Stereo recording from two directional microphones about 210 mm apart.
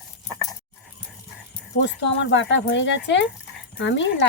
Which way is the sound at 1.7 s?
60° left (ahead or behind).